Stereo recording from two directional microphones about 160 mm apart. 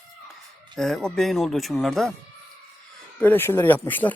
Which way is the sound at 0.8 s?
5° left (ahead or behind).